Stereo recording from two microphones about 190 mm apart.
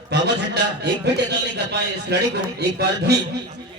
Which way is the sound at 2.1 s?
60° right (ahead or behind).